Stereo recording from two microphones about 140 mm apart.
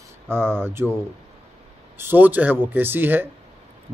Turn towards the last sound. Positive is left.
turn(degrees=-15)  # may be behind; listen again after turning